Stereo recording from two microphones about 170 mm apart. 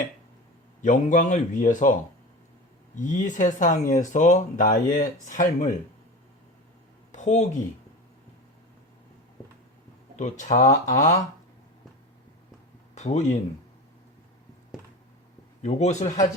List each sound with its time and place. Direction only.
0.8 s speech: 50° left (ahead or behind)
3.0 s speech: 45° left (ahead or behind)
7.1 s a sound: 45° left (ahead or behind)
10.2 s speech: 45° left (ahead or behind)
12.9 s speech: 40° left (ahead or behind)
15.6 s a man's voice: 40° left (ahead or behind)